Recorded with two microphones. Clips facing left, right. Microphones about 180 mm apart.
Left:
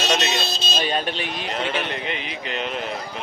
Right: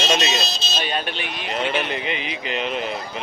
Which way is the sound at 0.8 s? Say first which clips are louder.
Left 2 dB; 35° left (ahead or behind).